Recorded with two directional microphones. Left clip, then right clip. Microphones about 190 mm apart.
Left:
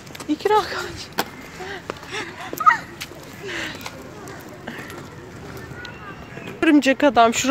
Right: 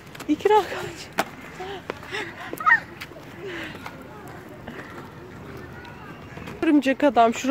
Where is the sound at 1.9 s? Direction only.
30° left (ahead or behind).